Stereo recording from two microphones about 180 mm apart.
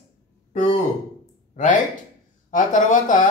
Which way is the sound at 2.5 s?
45° left (ahead or behind).